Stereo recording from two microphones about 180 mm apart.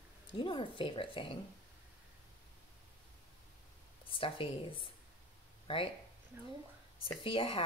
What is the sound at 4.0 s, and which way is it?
Speech, 30° left (ahead or behind).